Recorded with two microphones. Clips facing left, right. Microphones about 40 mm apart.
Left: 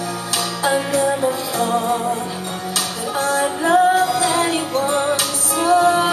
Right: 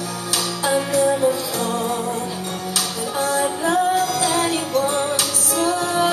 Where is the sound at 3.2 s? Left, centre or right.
Centre.